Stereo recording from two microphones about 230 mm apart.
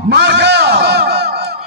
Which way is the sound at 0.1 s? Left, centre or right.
Right.